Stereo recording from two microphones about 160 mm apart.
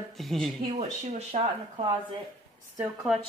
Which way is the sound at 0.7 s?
45° right (ahead or behind).